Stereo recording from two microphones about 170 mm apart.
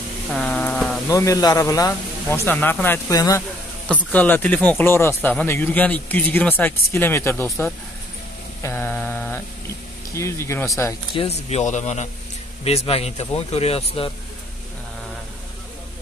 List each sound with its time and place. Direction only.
0.3 s a sound: 5° left (ahead or behind)
1.0 s speech: 20° left (ahead or behind)
3.9 s speech: 10° left (ahead or behind)
8.6 s mantra: 10° left (ahead or behind)
10.1 s speech: 15° left (ahead or behind)
11.1 s a man's voice: 40° left (ahead or behind)